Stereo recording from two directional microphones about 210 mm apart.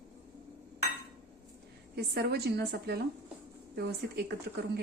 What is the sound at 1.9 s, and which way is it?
A woman's voice, 50° right (ahead or behind).